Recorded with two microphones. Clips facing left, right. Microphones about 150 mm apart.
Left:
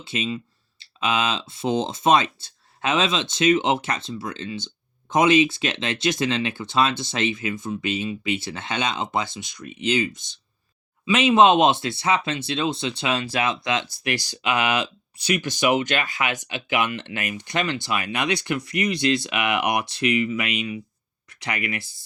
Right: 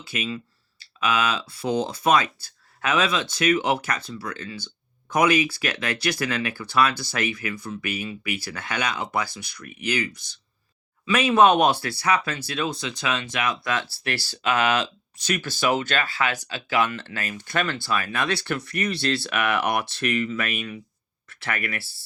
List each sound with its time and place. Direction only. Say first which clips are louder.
0.0 s speech: left 3 dB; 25° left (ahead or behind)